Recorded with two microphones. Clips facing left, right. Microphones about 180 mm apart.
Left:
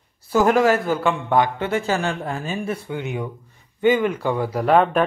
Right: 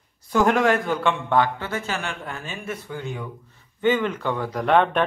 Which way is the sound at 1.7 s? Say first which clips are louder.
Left 7 dB; 35° left (ahead or behind).